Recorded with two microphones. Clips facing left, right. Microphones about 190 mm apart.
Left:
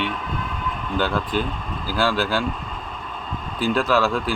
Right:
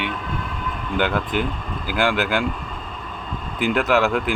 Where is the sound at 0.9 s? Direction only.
20° right (ahead or behind).